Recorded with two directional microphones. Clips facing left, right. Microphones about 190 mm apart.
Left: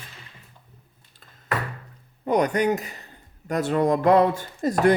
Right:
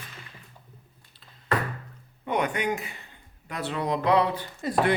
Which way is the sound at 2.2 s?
40° left (ahead or behind).